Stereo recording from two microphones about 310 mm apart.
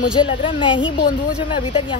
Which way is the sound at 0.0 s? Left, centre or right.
Centre.